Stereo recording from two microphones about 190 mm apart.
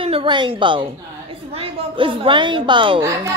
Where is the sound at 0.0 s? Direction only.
25° right (ahead or behind).